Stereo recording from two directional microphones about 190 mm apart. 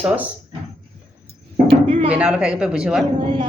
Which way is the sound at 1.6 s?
30° right (ahead or behind).